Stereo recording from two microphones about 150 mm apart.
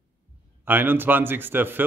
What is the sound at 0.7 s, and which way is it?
A man's voice, 15° right (ahead or behind).